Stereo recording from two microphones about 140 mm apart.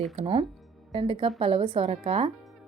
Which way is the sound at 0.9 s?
40° right (ahead or behind).